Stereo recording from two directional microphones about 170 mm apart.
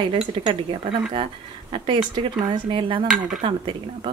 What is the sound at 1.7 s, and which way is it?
A woman's voice, 30° right (ahead or behind).